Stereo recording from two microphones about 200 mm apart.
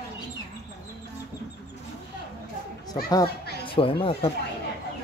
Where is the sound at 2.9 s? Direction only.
20° left (ahead or behind).